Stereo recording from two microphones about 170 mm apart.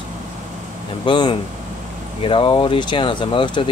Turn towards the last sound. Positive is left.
turn(degrees=30)  # may be behind; listen again after turning